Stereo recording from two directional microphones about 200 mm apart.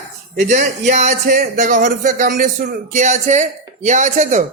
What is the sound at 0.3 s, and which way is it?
A man's voice, 35° right (ahead or behind).